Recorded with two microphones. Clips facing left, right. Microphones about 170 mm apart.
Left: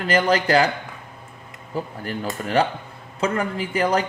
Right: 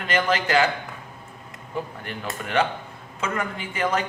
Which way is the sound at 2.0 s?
35° left (ahead or behind).